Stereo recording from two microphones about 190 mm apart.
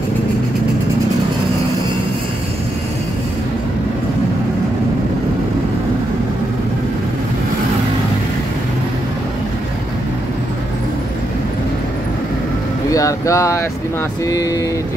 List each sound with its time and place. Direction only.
12.9 s speech: 15° left (ahead or behind)